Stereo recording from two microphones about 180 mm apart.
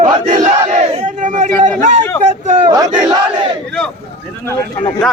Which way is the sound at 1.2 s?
45° right (ahead or behind).